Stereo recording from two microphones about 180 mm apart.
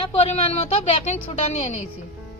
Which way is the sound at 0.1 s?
35° left (ahead or behind).